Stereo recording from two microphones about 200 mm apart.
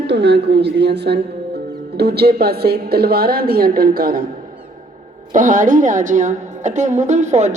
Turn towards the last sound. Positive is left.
turn(degrees=-35)  # may be behind; listen again after turning